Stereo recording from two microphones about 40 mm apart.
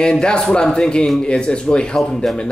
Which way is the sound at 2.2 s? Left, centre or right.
Centre.